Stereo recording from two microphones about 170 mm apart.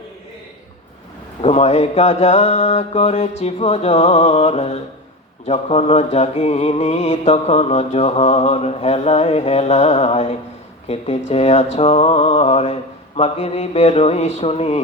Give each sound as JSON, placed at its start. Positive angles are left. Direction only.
{"t": 1.4, "sound": "mantra", "side_deg": 40}